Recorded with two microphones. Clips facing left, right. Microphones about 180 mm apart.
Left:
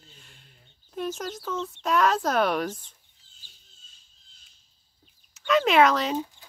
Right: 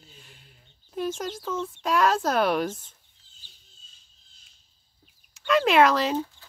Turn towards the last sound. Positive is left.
turn(degrees=0)  # may be behind; listen again after turning